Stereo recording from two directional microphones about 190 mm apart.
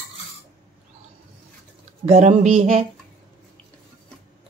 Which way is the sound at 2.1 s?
35° right (ahead or behind).